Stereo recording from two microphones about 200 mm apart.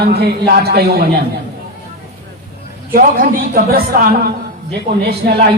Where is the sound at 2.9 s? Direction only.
45° right (ahead or behind).